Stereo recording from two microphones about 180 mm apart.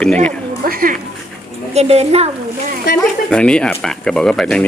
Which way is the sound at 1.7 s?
35° right (ahead or behind).